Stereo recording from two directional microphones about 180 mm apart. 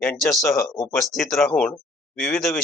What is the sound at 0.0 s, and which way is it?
Speech, centre (ahead or behind).